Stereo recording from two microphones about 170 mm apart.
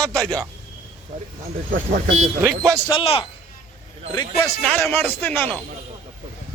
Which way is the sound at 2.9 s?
35° left (ahead or behind).